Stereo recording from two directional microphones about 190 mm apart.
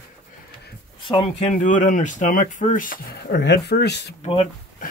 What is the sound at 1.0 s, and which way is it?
Speech, 25° left (ahead or behind).